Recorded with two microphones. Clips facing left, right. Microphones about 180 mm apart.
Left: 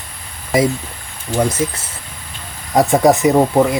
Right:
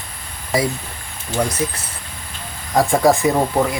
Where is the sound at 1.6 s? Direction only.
20° left (ahead or behind).